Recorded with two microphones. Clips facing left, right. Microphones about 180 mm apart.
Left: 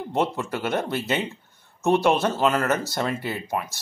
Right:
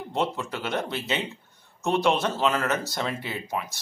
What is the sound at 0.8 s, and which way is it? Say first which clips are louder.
Speech: left 4 dB; 50° left (ahead or behind).